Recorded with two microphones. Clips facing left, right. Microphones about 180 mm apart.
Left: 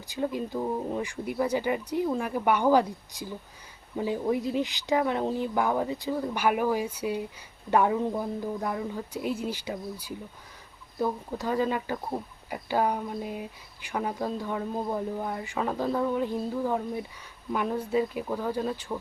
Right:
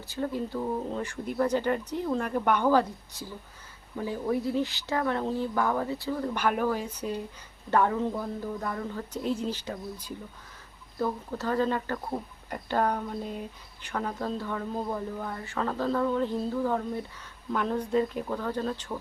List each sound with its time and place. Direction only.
0.1 s speech: 15° left (ahead or behind)